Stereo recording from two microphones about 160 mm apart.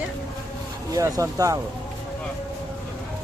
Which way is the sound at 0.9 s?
20° right (ahead or behind).